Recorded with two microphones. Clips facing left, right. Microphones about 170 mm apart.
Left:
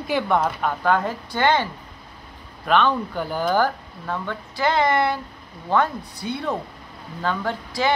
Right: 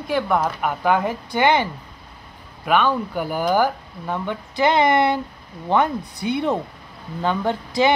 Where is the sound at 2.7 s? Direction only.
10° right (ahead or behind).